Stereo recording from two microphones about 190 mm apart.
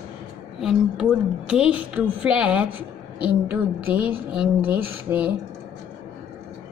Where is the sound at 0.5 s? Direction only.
Centre (ahead or behind).